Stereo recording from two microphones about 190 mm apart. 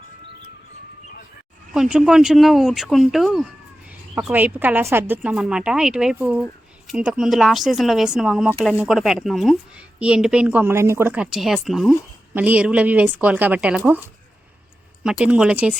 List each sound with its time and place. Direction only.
1.7 s a woman's voice: 5° right (ahead or behind)
15.0 s speech: 5° right (ahead or behind)